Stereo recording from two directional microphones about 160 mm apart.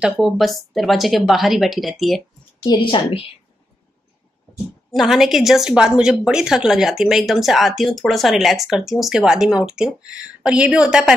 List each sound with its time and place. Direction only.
0.0 s a woman's voice: centre (ahead or behind)
2.6 s a woman's voice: 30° left (ahead or behind)
4.9 s a woman's voice: centre (ahead or behind)